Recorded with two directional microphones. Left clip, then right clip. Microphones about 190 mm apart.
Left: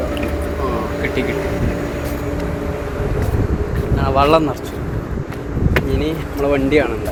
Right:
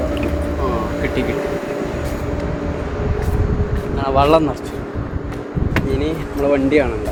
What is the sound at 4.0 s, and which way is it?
Speech, 5° left (ahead or behind).